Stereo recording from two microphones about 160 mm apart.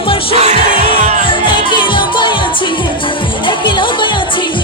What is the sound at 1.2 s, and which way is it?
Music, 30° left (ahead or behind).